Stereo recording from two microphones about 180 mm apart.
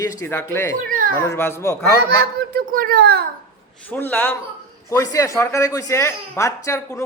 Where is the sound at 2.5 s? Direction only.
55° right (ahead or behind).